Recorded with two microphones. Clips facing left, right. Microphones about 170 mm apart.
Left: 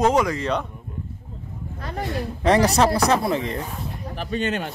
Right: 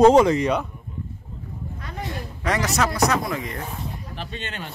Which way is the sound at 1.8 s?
35° left (ahead or behind).